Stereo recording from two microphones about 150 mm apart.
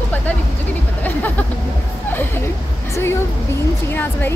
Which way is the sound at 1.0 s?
10° left (ahead or behind).